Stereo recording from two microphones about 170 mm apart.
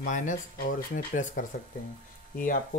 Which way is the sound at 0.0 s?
50° left (ahead or behind).